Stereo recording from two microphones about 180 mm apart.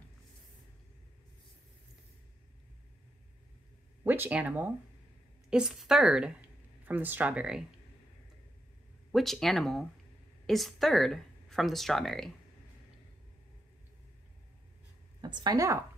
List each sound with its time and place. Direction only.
4.0 s speech: 10° right (ahead or behind)
9.1 s speech: centre (ahead or behind)
15.2 s speech: 25° right (ahead or behind)